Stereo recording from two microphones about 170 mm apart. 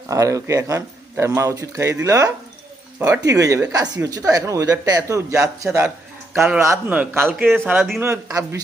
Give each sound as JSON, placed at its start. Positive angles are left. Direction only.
{"t": 0.1, "sound": "a man's voice", "side_deg": -20}